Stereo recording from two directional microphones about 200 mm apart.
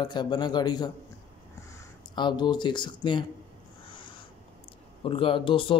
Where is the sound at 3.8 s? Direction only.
25° left (ahead or behind).